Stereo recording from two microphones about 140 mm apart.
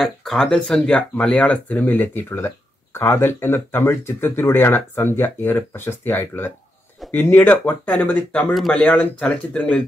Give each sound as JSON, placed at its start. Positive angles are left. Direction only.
{"t": 0.0, "sound": "speech", "side_deg": 0}
{"t": 8.5, "sound": "speech", "side_deg": 0}